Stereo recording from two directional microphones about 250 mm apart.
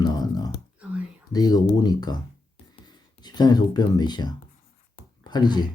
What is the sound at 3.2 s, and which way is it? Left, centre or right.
Speech, centre.